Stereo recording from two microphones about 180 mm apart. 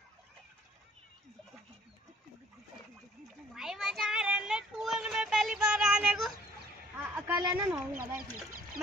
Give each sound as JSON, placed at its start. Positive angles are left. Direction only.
{"t": 3.5, "sound": "child singing", "side_deg": -5}
{"t": 7.2, "sound": "speech", "side_deg": -15}